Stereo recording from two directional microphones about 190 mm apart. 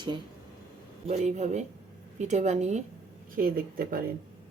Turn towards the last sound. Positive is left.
turn(degrees=-50)  # may be behind; listen again after turning